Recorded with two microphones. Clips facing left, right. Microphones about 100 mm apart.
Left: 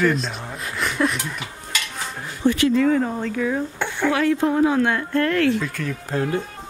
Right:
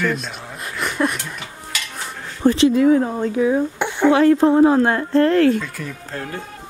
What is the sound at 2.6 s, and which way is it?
Speech, 20° right (ahead or behind).